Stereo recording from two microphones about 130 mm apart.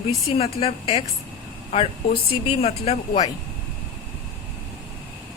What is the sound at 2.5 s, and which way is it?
Speech, 55° left (ahead or behind).